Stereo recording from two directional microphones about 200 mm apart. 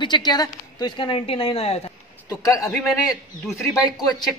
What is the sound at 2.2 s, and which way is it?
Speech, 15° left (ahead or behind).